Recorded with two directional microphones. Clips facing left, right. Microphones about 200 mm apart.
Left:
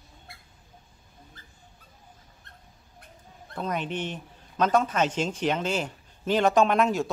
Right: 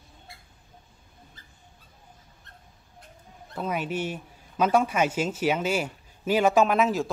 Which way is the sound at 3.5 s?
5° right (ahead or behind).